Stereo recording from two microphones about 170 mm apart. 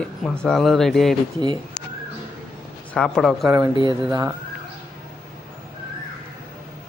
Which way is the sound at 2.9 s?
5° left (ahead or behind).